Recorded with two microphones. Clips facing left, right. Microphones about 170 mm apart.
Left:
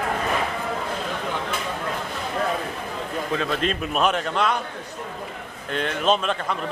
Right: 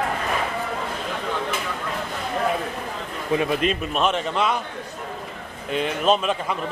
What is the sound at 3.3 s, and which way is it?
Speech, 15° right (ahead or behind).